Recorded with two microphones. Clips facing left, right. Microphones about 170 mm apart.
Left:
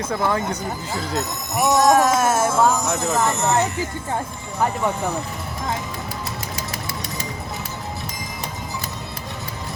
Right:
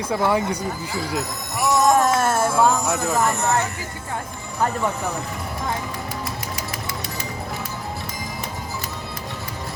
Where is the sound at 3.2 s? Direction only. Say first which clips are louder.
Left 3 dB; 20° left (ahead or behind).